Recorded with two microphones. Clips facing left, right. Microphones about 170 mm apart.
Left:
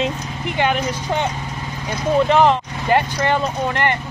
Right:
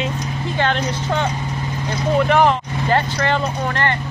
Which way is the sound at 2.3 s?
20° left (ahead or behind).